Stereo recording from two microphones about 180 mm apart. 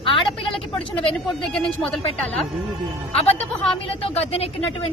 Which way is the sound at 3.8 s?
30° left (ahead or behind).